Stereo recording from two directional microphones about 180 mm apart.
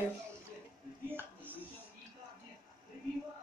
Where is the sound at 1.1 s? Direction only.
10° right (ahead or behind).